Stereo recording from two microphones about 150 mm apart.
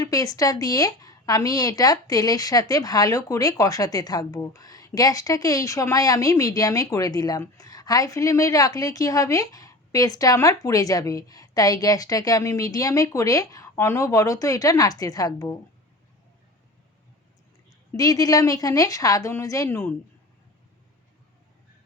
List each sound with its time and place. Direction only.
0.0 s speech: 25° left (ahead or behind)
17.9 s speech: 25° left (ahead or behind)